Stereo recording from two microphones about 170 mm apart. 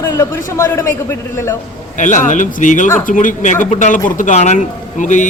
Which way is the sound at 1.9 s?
45° left (ahead or behind).